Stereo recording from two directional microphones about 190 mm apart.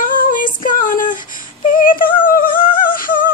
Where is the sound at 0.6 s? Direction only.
45° left (ahead or behind).